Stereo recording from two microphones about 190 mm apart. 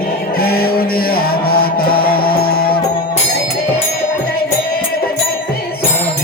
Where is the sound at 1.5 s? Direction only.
50° left (ahead or behind).